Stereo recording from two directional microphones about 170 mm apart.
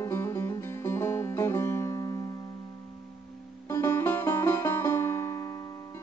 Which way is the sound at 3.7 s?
15° left (ahead or behind).